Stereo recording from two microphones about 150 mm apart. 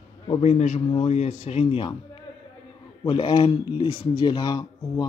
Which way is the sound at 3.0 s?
30° left (ahead or behind).